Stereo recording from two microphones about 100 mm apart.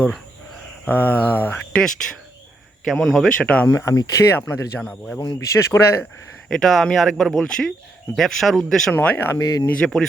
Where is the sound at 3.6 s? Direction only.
30° left (ahead or behind).